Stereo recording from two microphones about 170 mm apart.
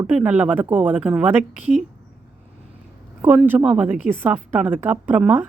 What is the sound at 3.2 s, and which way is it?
Speech, 10° right (ahead or behind).